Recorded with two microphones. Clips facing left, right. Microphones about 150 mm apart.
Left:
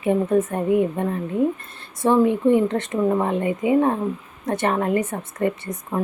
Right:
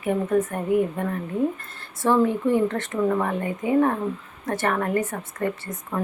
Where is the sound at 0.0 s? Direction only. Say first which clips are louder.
Left 3 dB; 25° left (ahead or behind).